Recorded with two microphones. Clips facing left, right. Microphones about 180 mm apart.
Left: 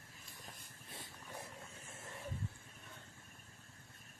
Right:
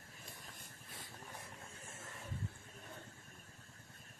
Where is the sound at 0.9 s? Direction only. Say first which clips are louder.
Left 1 dB; 25° left (ahead or behind).